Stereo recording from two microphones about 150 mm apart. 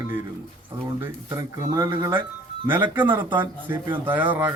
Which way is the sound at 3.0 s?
10° right (ahead or behind).